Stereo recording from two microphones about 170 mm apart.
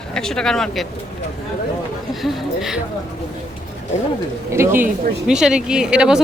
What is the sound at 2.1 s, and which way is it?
Speech, centre (ahead or behind).